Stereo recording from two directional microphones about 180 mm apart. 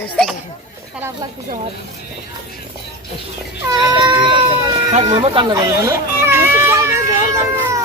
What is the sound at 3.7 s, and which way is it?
Speech, 25° right (ahead or behind).